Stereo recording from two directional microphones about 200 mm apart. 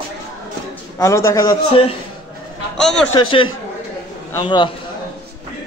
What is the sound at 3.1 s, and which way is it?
A man's voice, 25° left (ahead or behind).